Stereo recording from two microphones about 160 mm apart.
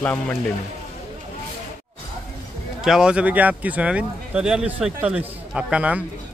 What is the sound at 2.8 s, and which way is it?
Speech, 5° right (ahead or behind).